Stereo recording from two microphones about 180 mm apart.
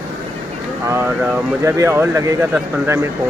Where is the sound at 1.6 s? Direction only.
15° right (ahead or behind).